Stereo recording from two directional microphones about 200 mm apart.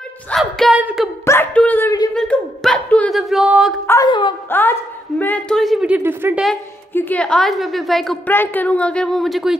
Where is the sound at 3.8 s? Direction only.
20° left (ahead or behind).